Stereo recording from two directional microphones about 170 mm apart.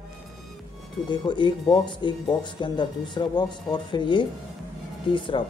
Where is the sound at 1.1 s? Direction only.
25° left (ahead or behind).